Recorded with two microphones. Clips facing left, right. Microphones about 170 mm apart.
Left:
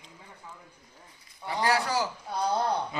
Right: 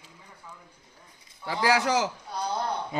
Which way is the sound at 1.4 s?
90° right.